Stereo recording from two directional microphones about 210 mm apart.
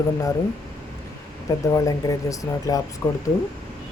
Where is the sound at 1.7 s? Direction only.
15° left (ahead or behind).